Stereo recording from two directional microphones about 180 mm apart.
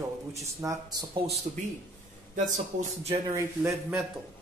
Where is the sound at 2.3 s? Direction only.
40° right (ahead or behind).